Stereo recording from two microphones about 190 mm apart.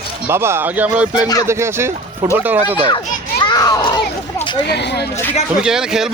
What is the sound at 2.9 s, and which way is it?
Children playing, 25° left (ahead or behind).